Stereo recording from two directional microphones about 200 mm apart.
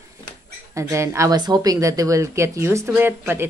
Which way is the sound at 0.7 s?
15° right (ahead or behind).